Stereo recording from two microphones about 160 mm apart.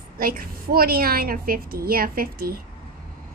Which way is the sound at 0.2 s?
65° right (ahead or behind).